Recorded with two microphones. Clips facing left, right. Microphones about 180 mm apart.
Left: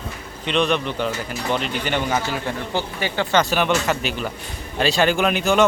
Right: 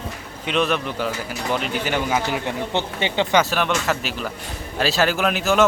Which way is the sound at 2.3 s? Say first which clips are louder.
Right 1 dB; 20° right (ahead or behind).